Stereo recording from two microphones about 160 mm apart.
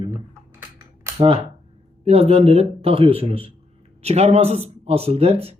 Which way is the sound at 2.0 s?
40° right (ahead or behind).